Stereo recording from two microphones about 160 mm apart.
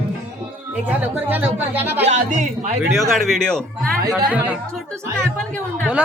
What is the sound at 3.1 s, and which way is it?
Speech, centre (ahead or behind).